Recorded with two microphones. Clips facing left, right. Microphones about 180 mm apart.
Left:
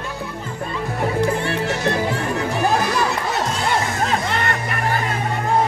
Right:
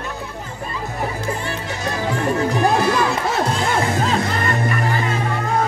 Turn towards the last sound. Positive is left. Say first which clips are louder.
# right 2 dB
turn(degrees=70)  # may be behind; listen again after turning